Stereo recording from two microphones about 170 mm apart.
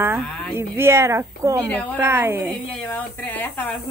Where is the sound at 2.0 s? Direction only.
15° right (ahead or behind).